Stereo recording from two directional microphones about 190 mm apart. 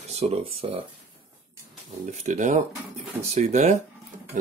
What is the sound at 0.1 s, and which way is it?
Speech, 35° right (ahead or behind).